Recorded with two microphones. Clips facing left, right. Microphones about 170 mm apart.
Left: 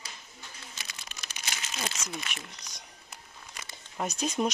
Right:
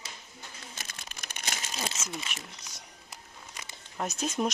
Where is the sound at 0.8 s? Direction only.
50° right (ahead or behind).